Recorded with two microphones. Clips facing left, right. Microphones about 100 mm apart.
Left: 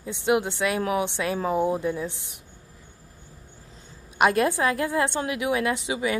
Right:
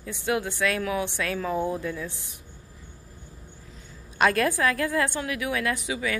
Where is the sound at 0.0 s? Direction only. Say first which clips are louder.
Left 4 dB; 20° left (ahead or behind).